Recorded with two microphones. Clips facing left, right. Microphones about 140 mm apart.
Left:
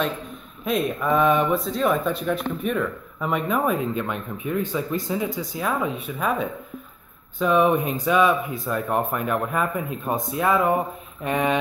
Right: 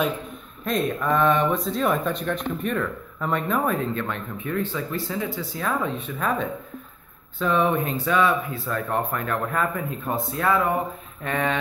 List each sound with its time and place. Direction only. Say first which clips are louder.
0.7 s speech: left 1 dB; 5° left (ahead or behind)